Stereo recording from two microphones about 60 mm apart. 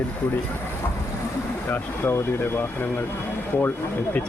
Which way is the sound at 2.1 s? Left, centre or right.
Left.